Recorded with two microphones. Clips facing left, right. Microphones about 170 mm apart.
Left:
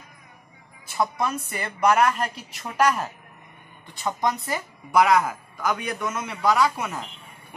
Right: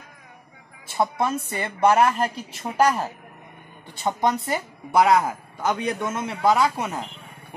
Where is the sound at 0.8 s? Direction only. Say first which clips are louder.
Right 2 dB; 25° right (ahead or behind).